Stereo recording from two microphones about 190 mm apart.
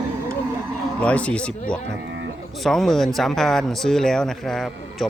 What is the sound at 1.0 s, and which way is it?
Speech, 5° left (ahead or behind).